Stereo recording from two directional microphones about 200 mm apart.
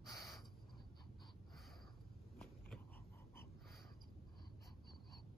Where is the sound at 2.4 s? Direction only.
5° left (ahead or behind).